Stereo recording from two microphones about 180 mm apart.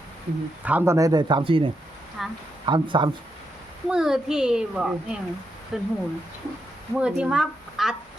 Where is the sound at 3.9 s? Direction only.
5° right (ahead or behind).